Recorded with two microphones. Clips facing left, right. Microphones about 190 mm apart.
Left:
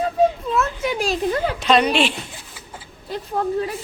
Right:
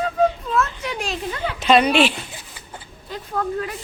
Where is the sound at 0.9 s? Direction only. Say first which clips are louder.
Left 7 dB; 35° left (ahead or behind).